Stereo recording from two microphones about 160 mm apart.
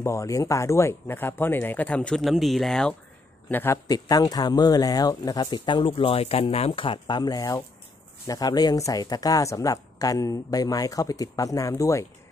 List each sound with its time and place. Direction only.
0.0 s speech: 20° left (ahead or behind)